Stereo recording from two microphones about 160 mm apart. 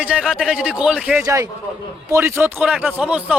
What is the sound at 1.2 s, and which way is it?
A man's voice, 20° right (ahead or behind).